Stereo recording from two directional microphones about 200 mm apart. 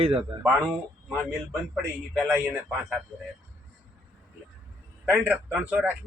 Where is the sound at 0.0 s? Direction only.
30° right (ahead or behind).